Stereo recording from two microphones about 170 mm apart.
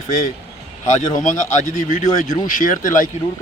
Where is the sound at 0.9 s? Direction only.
45° left (ahead or behind).